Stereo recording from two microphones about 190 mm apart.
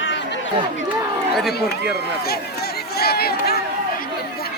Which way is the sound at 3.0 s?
55° left (ahead or behind).